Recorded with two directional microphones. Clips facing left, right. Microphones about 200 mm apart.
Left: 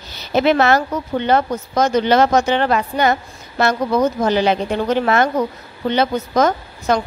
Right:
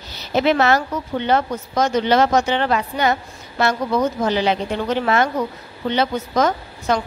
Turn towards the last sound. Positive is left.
turn(degrees=45)  # may be behind; listen again after turning